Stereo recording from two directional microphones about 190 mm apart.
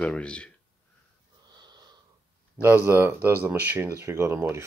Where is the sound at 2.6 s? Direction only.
10° right (ahead or behind).